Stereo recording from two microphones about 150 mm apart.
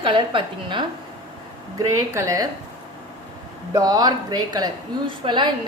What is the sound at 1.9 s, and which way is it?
Speech, 20° right (ahead or behind).